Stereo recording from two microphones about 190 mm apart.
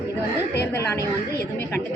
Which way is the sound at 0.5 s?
60° left (ahead or behind).